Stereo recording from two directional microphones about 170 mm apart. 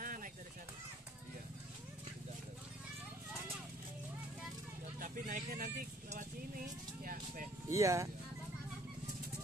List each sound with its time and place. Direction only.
0.0 s a sound: 55° right (ahead or behind)
4.9 s speech: 55° right (ahead or behind)
7.7 s speech: 20° right (ahead or behind)